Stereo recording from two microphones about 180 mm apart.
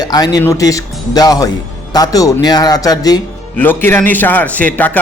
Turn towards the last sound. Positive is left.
turn(degrees=10)  # may be behind; listen again after turning